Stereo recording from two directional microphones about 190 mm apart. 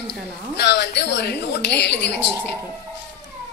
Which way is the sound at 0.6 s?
60° left (ahead or behind).